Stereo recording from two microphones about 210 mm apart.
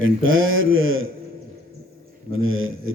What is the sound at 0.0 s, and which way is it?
A man's voice, 70° right (ahead or behind).